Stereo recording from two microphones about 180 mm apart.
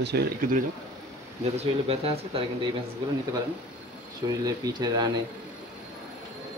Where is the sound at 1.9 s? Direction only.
35° right (ahead or behind).